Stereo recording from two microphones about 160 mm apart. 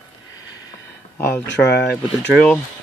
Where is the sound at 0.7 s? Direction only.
15° left (ahead or behind).